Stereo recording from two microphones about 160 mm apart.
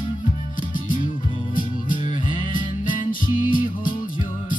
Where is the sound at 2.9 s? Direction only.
60° left (ahead or behind).